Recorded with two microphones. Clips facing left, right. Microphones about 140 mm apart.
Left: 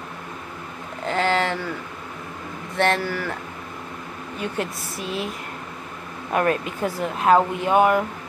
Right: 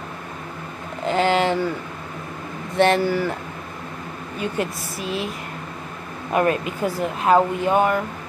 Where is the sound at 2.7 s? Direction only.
15° right (ahead or behind).